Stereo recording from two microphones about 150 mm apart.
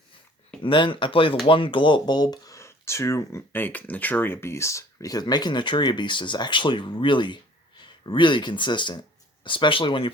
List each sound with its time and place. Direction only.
0.6 s speech: 35° left (ahead or behind)